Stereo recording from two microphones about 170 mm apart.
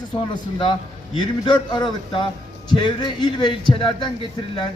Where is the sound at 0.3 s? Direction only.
30° left (ahead or behind).